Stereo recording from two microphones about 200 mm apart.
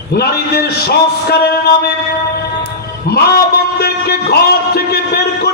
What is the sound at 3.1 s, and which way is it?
A man's voice, 50° left (ahead or behind).